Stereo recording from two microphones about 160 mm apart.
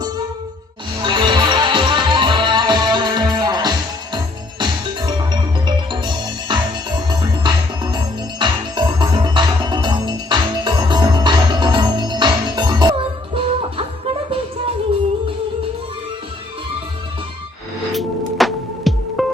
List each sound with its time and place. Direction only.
1.0 s music: 30° right (ahead or behind)
18.3 s music: centre (ahead or behind)